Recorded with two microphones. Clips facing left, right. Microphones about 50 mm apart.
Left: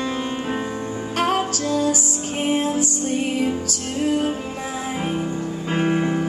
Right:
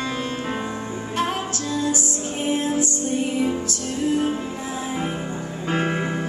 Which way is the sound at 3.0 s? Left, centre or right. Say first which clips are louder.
Left 1 dB; left.